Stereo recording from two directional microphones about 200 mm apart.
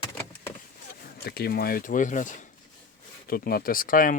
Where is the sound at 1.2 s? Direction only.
50° left (ahead or behind).